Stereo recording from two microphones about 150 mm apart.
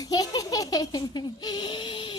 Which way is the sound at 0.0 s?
25° left (ahead or behind).